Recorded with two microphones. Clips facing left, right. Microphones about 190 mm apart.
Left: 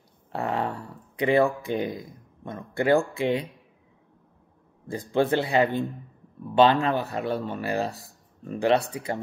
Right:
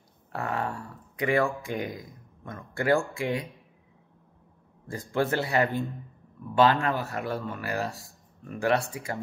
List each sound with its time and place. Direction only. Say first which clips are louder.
0.3 s speech: left 3 dB; 25° left (ahead or behind)
4.9 s speech: left 4 dB; 20° left (ahead or behind)